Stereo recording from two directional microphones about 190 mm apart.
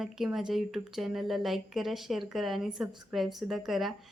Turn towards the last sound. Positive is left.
turn(degrees=0)  # may be behind; listen again after turning